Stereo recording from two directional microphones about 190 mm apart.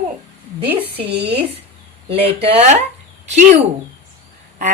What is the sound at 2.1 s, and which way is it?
Speech, 30° right (ahead or behind).